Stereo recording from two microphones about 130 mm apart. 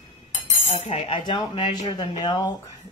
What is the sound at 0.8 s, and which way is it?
Speech, 50° left (ahead or behind).